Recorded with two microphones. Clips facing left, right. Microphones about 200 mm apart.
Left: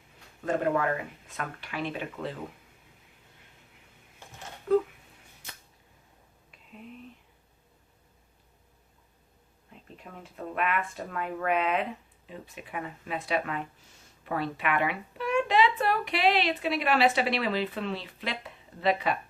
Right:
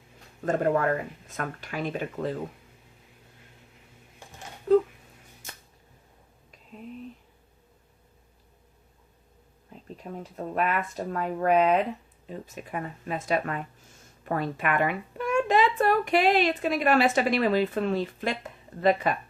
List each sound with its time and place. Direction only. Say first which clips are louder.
0.4 s speech: right 3 dB; 45° right (ahead or behind)
4.7 s a sound: right 4 dB; 30° right (ahead or behind)
9.8 s speech: right 8 dB; 35° right (ahead or behind)